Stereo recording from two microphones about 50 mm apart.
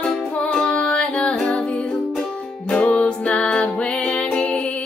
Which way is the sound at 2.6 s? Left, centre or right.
Centre.